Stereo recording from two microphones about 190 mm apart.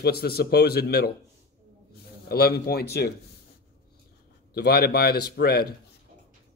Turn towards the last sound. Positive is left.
turn(degrees=55)  # may be behind; listen again after turning